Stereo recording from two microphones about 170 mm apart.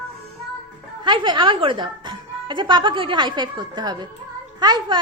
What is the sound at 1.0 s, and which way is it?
Speech, 25° right (ahead or behind).